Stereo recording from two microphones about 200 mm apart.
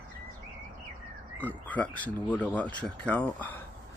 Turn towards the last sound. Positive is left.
turn(degrees=10)  # may be behind; listen again after turning